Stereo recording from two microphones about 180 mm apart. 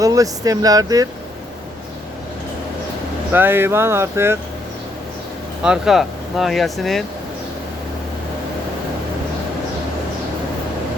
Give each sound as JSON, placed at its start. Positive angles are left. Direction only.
{"t": 0.0, "sound": "speech", "side_deg": -20}
{"t": 3.3, "sound": "speech", "side_deg": -10}
{"t": 5.6, "sound": "speech", "side_deg": -5}